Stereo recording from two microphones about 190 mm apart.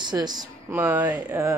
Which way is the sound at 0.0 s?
20° right (ahead or behind).